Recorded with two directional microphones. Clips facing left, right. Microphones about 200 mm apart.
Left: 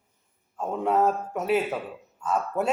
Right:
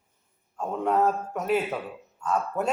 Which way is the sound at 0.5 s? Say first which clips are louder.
Left 1 dB; 5° left (ahead or behind).